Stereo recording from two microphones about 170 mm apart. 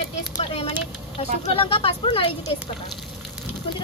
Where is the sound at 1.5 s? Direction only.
35° left (ahead or behind).